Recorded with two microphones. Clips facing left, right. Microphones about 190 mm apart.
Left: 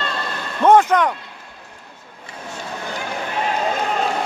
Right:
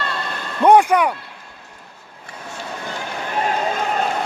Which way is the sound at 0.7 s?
10° right (ahead or behind).